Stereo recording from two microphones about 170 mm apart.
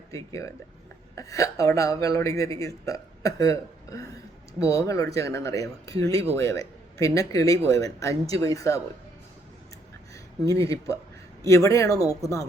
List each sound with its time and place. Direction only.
1.1 s speech: 20° left (ahead or behind)
10.4 s speech: 20° left (ahead or behind)